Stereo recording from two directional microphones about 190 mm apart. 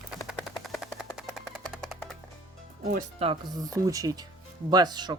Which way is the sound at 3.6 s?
20° right (ahead or behind).